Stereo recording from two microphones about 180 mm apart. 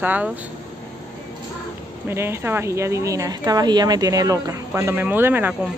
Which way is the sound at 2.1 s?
15° right (ahead or behind).